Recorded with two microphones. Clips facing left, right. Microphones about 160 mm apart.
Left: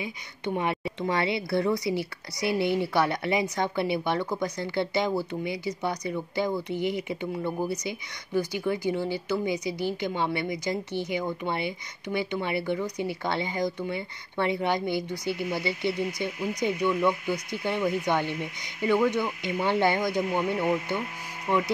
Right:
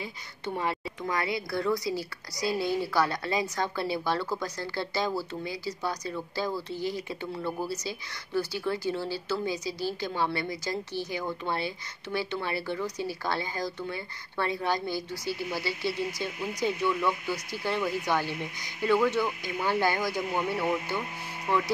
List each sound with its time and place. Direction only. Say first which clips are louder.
0.6 s speech: left 3 dB; 20° left (ahead or behind)